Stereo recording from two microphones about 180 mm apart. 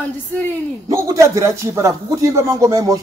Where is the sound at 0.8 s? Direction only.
20° right (ahead or behind).